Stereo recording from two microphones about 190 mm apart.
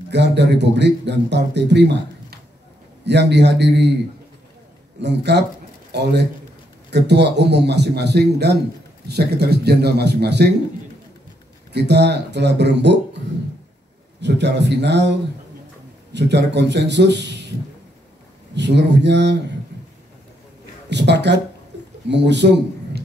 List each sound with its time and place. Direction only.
0.1 s speech: 65° right (ahead or behind)
5.0 s a man's voice: 65° right (ahead or behind)
11.7 s speech: 60° right (ahead or behind)
14.2 s speech: 65° right (ahead or behind)
18.5 s speech: 65° right (ahead or behind)
19.7 s a sound: 65° right (ahead or behind)
20.9 s a man's voice: 65° right (ahead or behind)